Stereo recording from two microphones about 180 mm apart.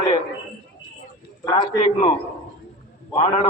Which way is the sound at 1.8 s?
40° left (ahead or behind).